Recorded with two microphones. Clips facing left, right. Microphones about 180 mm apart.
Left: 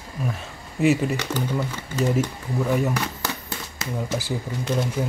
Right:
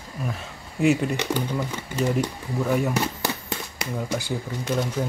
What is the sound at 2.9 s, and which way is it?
Speech, 25° right (ahead or behind).